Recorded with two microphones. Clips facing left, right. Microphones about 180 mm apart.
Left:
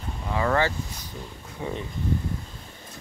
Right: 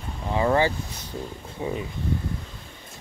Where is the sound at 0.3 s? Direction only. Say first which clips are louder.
Right 3 dB; 20° right (ahead or behind).